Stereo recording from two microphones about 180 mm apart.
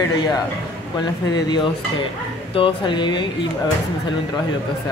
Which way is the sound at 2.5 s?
30° left (ahead or behind).